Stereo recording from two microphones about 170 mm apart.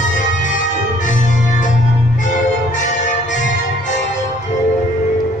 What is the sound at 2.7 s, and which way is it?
Music, 45° left (ahead or behind).